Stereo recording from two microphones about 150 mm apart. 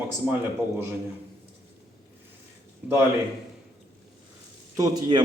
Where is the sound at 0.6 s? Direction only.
20° left (ahead or behind).